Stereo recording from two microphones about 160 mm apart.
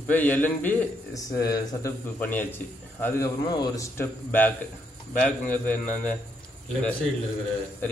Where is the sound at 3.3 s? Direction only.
25° left (ahead or behind); by 5.8 s 10° left (ahead or behind).